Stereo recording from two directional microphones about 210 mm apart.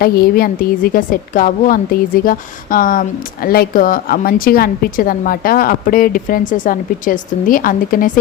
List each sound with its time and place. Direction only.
0.0 s a woman's voice: 45° left (ahead or behind)